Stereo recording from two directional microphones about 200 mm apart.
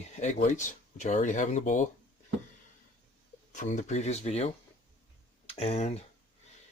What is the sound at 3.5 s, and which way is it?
Speech, 35° left (ahead or behind).